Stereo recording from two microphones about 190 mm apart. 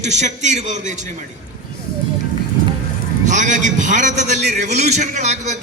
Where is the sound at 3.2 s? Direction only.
40° right (ahead or behind).